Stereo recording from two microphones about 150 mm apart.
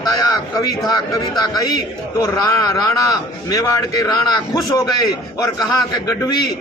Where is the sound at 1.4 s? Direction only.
25° left (ahead or behind).